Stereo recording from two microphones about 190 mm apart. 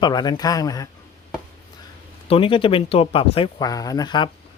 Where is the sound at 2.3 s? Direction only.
30° left (ahead or behind).